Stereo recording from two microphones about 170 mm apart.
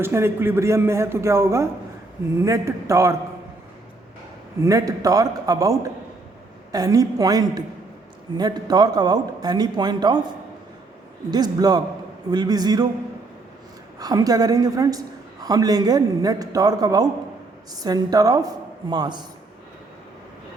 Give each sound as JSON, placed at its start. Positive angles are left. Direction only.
{"t": 0.0, "sound": "a man's voice", "side_deg": -15}
{"t": 4.6, "sound": "a woman's voice", "side_deg": -20}
{"t": 11.3, "sound": "a woman's voice", "side_deg": -25}
{"t": 14.0, "sound": "a woman's voice", "side_deg": -20}